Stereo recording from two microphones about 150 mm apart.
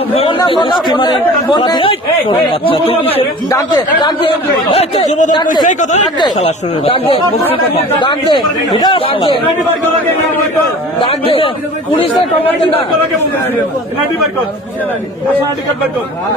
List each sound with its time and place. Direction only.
0.1 s speech: 35° left (ahead or behind)
3.4 s speech: 25° left (ahead or behind)
4.6 s speech: 50° left (ahead or behind)
6.3 s speech: 40° left (ahead or behind)
11.0 s speech: 35° left (ahead or behind)